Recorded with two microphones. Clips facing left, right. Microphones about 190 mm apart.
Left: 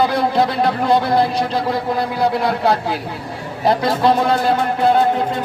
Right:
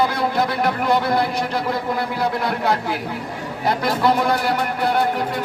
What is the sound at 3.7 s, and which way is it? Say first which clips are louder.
Speech: left 4 dB; 20° left (ahead or behind).